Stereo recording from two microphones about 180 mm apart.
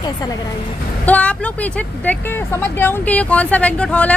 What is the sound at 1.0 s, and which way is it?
Speech, 10° left (ahead or behind).